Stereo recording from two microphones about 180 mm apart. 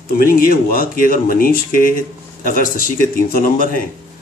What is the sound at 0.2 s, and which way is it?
Speech, 55° left (ahead or behind).